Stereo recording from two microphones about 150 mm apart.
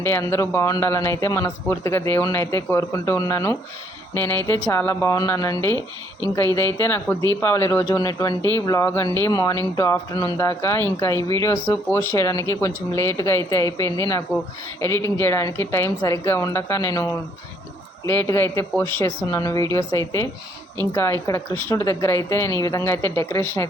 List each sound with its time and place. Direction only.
0.0 s a woman's voice: 15° left (ahead or behind)
5.7 s speech: 25° right (ahead or behind)
6.3 s a woman's voice: 15° left (ahead or behind)